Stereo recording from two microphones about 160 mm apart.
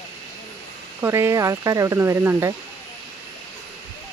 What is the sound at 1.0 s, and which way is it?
Speech, 15° right (ahead or behind).